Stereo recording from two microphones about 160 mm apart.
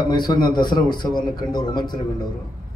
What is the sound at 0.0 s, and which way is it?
A man's voice, 25° left (ahead or behind).